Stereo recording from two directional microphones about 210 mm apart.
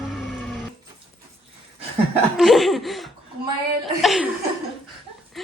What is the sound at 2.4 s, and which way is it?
Speech, centre (ahead or behind).